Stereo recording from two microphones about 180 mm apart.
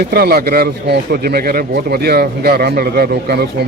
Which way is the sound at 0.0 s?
60° right (ahead or behind).